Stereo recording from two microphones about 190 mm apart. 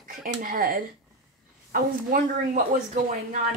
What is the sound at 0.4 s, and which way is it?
Speech, 50° right (ahead or behind).